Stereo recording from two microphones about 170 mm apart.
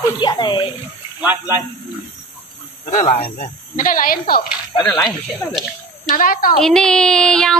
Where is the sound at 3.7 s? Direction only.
55° left (ahead or behind).